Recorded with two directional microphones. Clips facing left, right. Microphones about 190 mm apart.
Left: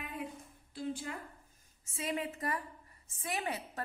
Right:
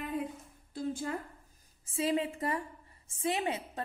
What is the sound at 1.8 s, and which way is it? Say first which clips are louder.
A woman's voice: right 6 dB; 30° right (ahead or behind).